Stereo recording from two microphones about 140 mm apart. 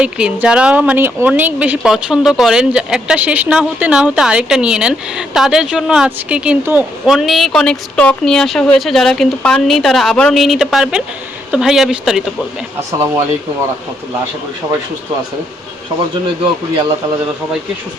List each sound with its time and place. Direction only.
0.0 s a woman's voice: 10° right (ahead or behind)
16.2 s speech: 35° right (ahead or behind)